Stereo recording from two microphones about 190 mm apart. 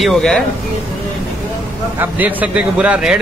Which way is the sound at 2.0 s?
10° right (ahead or behind).